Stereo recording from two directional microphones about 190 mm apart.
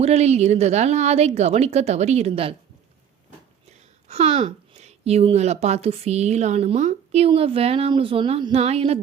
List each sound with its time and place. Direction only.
0.0 s a woman's voice: 35° right (ahead or behind)
4.1 s a woman's voice: 35° right (ahead or behind)